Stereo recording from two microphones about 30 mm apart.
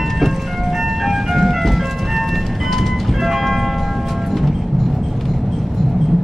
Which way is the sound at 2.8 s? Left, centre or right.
Centre.